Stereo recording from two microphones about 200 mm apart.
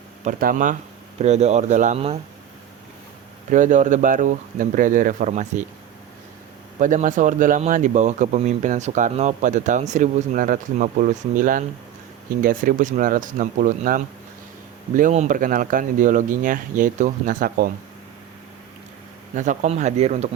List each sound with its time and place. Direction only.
0.3 s speech: 45° right (ahead or behind)
3.5 s speech: 40° right (ahead or behind)
6.7 s speech: 40° right (ahead or behind)
19.4 s speech: 35° right (ahead or behind)